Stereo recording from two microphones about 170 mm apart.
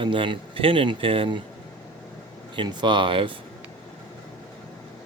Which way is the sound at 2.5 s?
25° right (ahead or behind).